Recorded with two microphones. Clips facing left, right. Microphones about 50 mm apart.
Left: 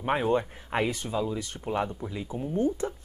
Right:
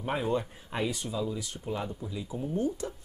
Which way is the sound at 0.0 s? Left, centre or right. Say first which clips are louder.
Left 4 dB; left.